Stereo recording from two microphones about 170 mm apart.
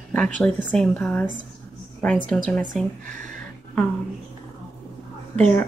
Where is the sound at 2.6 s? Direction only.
50° right (ahead or behind).